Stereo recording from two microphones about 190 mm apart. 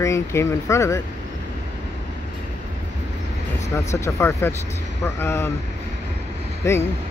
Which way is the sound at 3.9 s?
15° left (ahead or behind).